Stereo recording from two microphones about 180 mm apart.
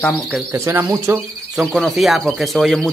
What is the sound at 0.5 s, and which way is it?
Speech, 15° right (ahead or behind).